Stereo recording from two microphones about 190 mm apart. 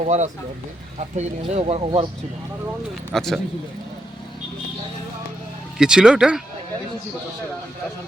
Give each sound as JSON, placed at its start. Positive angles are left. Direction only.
{"t": 0.0, "sound": "speech", "side_deg": -40}
{"t": 3.1, "sound": "speech", "side_deg": 0}
{"t": 5.7, "sound": "speech", "side_deg": -5}